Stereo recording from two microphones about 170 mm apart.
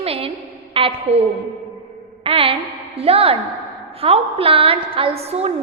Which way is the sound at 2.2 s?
30° right (ahead or behind).